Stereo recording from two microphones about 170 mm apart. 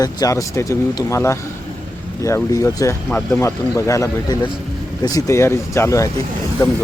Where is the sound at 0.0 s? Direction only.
20° left (ahead or behind).